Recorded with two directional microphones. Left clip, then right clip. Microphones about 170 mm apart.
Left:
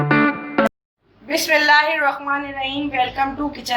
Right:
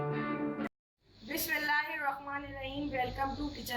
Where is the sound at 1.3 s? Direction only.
45° left (ahead or behind).